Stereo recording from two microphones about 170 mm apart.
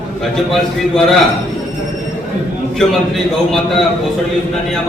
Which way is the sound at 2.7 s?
Centre (ahead or behind).